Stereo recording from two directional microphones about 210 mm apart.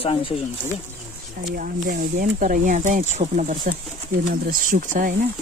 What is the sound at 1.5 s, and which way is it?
Speech, 40° right (ahead or behind).